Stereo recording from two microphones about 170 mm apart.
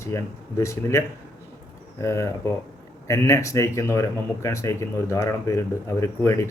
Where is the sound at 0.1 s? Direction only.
15° left (ahead or behind).